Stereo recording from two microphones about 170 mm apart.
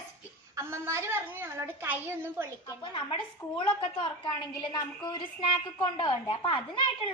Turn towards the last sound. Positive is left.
turn(degrees=30)  # may be behind; listen again after turning